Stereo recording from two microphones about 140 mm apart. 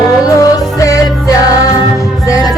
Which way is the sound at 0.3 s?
25° left (ahead or behind).